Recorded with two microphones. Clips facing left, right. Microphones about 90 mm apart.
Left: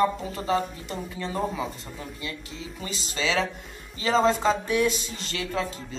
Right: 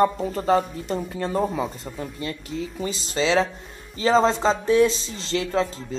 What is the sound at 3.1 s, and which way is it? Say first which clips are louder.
Speech: right 5 dB; 30° right (ahead or behind).